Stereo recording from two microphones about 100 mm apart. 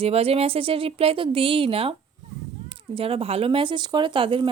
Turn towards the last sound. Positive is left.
turn(degrees=-60)  # may be behind; listen again after turning